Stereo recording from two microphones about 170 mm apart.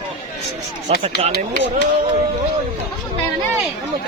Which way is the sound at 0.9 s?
35° right (ahead or behind).